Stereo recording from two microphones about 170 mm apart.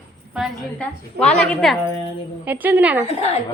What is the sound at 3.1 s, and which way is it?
Speech, 40° left (ahead or behind).